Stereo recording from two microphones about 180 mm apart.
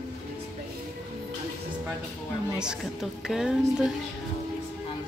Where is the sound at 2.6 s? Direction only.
5° right (ahead or behind).